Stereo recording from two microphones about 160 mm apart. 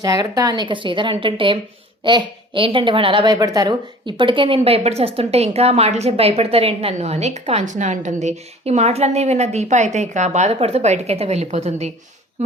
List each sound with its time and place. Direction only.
0.0 s speech: 25° right (ahead or behind); by 12.5 s 45° right (ahead or behind)